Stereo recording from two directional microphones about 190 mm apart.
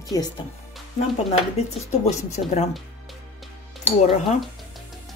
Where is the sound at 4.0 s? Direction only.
40° left (ahead or behind).